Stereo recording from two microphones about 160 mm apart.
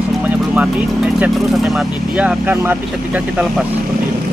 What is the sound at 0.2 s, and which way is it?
Speech, 10° right (ahead or behind).